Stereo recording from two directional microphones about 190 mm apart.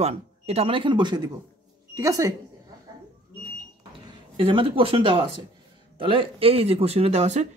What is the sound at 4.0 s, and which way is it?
Speech, 25° right (ahead or behind).